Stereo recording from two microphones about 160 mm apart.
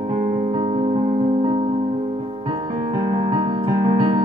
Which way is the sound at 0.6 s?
35° right (ahead or behind).